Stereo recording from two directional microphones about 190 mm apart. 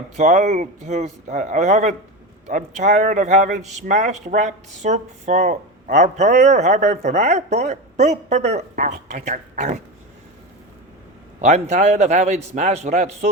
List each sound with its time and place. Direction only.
0.2 s a man's voice: 40° right (ahead or behind)
11.3 s a man's voice: 35° right (ahead or behind)